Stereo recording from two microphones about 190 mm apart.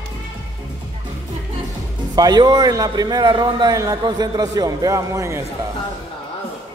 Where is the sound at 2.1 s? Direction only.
20° right (ahead or behind).